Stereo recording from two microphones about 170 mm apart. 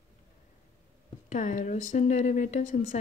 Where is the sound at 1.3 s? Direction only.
45° left (ahead or behind).